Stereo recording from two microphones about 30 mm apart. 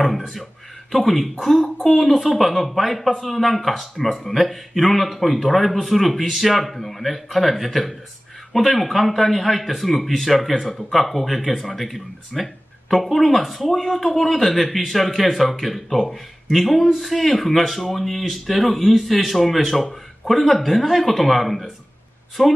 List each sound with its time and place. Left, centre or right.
0.0 s a sound: centre
0.9 s speech: centre
10.5 s speech: centre
10.8 s speech: centre
16.5 s speech: centre